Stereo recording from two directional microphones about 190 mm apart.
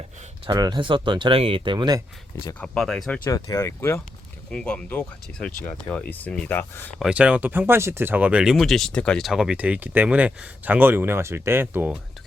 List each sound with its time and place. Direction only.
0.4 s speech: 20° right (ahead or behind)
2.6 s speech: 5° left (ahead or behind)
3.2 s speech: 15° left (ahead or behind)
7.0 s speech: 5° right (ahead or behind)